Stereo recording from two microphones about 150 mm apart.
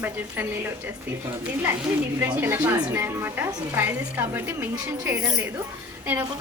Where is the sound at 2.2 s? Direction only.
15° right (ahead or behind).